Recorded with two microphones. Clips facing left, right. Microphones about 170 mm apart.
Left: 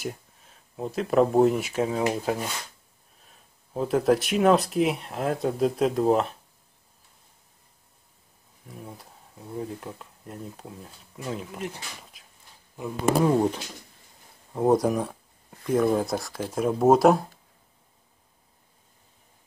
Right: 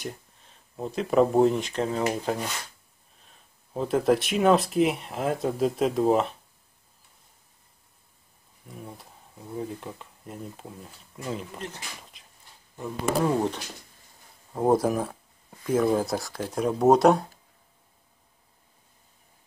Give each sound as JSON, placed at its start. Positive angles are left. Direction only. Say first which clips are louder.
{"t": 0.0, "sound": "speech", "louder": "left 3 dB", "side_deg": 5}
{"t": 8.6, "sound": "speech", "louder": "even", "side_deg": 0}
{"t": 14.5, "sound": "speech", "louder": "left 1 dB", "side_deg": -5}